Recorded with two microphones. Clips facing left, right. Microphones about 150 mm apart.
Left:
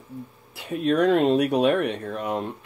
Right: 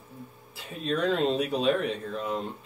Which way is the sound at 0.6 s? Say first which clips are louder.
Left 8 dB; 65° left (ahead or behind).